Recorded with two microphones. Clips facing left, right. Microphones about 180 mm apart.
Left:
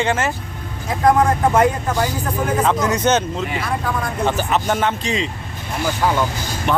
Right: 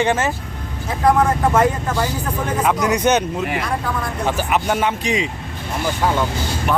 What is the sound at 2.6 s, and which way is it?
Speech, 15° right (ahead or behind).